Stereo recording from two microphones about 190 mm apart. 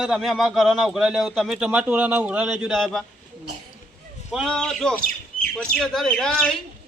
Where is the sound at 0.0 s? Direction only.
Centre (ahead or behind).